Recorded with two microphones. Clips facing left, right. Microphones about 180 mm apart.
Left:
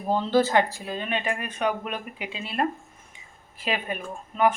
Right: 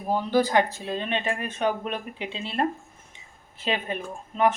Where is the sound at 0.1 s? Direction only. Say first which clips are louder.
Left 1 dB; 15° right (ahead or behind).